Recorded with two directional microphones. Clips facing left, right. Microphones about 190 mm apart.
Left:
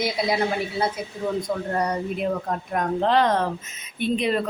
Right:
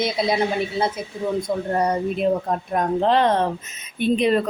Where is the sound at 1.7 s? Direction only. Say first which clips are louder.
Right 5 dB; 25° right (ahead or behind).